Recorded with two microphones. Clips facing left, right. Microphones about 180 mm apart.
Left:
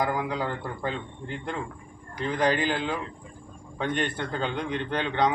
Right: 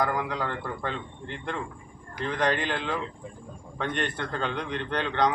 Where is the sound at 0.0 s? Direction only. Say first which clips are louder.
Left 1 dB; 5° left (ahead or behind).